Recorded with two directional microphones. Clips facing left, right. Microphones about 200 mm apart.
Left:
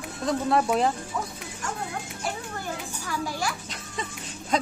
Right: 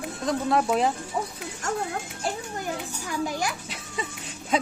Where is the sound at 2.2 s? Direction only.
20° right (ahead or behind).